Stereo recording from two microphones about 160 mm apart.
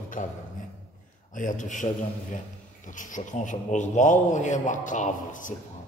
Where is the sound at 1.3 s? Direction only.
55° left (ahead or behind).